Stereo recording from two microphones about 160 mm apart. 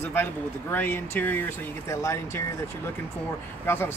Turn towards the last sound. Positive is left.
turn(degrees=15)  # may be behind; listen again after turning